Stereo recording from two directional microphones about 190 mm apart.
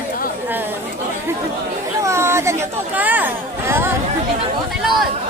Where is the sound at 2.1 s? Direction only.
15° right (ahead or behind).